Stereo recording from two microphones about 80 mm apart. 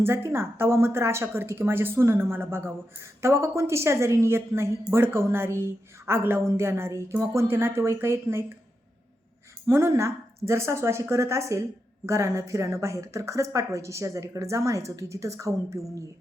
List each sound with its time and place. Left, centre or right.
0.0 s a woman's voice: right
9.6 s a woman's voice: right